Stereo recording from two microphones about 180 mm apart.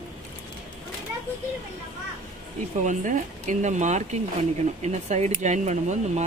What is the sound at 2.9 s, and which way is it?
Speech, 45° right (ahead or behind).